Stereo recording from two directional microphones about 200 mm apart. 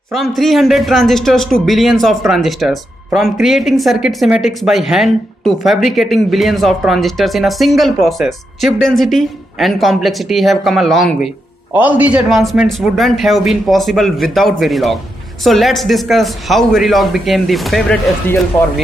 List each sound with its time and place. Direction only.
0.1 s speech: centre (ahead or behind)